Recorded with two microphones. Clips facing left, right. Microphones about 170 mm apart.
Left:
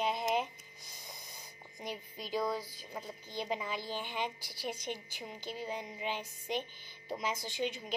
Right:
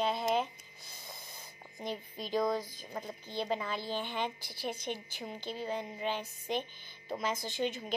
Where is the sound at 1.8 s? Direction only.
10° left (ahead or behind).